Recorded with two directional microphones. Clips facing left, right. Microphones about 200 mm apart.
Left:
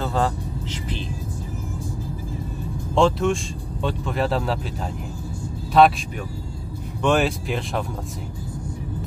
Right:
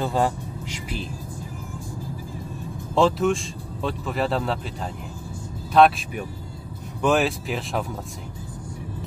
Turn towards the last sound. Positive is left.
turn(degrees=0)  # may be behind; listen again after turning